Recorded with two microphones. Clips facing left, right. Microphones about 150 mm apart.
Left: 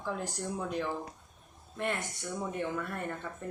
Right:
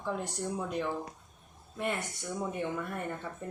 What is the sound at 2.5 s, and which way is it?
Speech, 10° right (ahead or behind).